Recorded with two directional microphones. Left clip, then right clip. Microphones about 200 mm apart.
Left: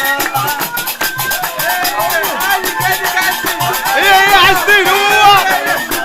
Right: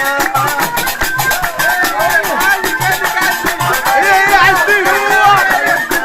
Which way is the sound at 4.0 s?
10° left (ahead or behind).